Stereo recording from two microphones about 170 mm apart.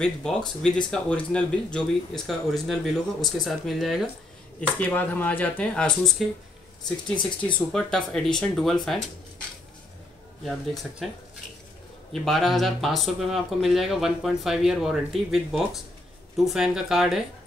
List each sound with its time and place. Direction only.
0.0 s speech: 5° left (ahead or behind)
7.7 s speech: 5° left (ahead or behind)
10.4 s speech: centre (ahead or behind)
12.1 s speech: centre (ahead or behind)